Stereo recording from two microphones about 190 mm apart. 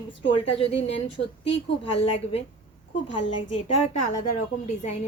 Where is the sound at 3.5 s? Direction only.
35° left (ahead or behind).